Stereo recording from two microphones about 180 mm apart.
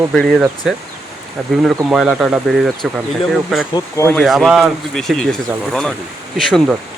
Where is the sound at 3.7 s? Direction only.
15° left (ahead or behind).